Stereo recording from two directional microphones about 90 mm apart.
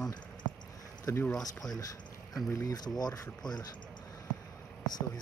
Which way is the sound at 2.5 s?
35° left (ahead or behind).